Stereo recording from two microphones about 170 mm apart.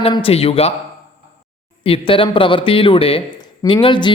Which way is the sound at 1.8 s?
30° left (ahead or behind).